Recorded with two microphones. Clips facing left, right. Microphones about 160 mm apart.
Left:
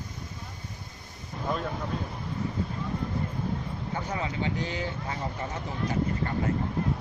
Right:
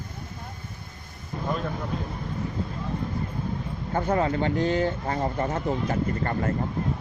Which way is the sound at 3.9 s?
55° right (ahead or behind).